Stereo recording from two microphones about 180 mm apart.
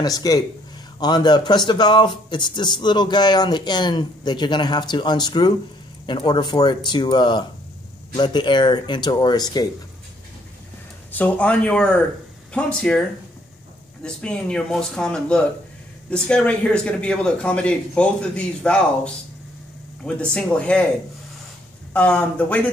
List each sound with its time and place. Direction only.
0.0 s speech: 20° left (ahead or behind)
11.1 s speech: 10° left (ahead or behind)
14.0 s speech: 5° left (ahead or behind)
21.9 s speech: 5° left (ahead or behind)